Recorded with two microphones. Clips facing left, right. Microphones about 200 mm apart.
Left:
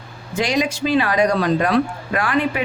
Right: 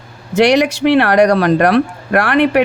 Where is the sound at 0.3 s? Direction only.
75° right (ahead or behind).